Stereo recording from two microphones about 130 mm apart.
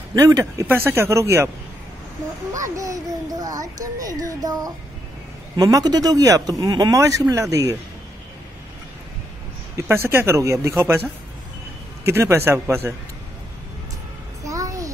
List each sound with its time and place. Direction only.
0.1 s speech: 25° right (ahead or behind)
2.5 s a child's voice: 25° right (ahead or behind)
9.8 s speech: 20° right (ahead or behind)
12.1 s speech: 20° right (ahead or behind)
14.4 s music: 25° right (ahead or behind)